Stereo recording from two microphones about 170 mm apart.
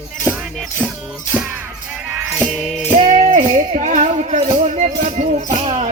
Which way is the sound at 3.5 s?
45° right (ahead or behind).